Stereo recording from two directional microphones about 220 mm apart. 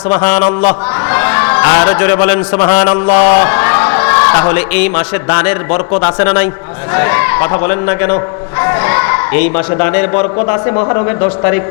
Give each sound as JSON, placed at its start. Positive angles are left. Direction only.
{"t": 1.1, "sound": "a man's voice", "side_deg": 15}